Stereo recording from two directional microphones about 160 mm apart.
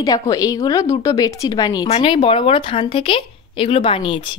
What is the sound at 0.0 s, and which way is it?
A woman's voice, 20° left (ahead or behind).